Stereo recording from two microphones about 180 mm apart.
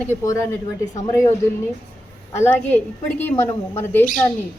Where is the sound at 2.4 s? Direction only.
10° left (ahead or behind).